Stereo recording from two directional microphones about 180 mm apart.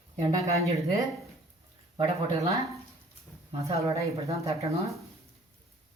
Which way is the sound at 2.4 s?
20° right (ahead or behind).